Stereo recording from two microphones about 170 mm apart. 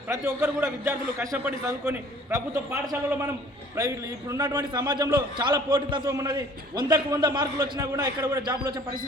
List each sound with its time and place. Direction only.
0.1 s a man's voice: 15° right (ahead or behind)
2.9 s a man's voice: 15° right (ahead or behind)